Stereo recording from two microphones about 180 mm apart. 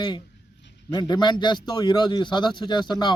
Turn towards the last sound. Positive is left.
turn(degrees=25)  # may be behind; listen again after turning